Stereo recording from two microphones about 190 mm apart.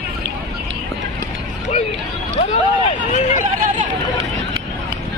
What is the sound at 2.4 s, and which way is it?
Vehicle, 35° left (ahead or behind).